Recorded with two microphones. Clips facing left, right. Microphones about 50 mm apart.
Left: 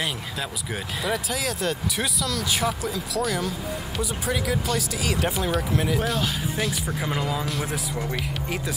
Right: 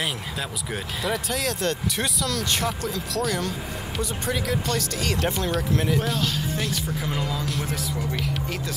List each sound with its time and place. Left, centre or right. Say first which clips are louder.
1.0 s speech: right 1 dB; centre
6.9 s speech: left 1 dB; centre
7.4 s speech: even; centre